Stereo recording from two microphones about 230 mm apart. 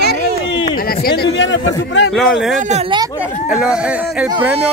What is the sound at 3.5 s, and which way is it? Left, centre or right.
Speech, centre.